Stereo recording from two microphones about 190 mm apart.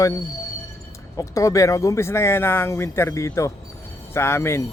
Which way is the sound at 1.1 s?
15° left (ahead or behind).